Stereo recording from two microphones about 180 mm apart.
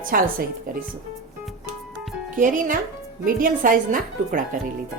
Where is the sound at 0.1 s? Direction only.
50° right (ahead or behind).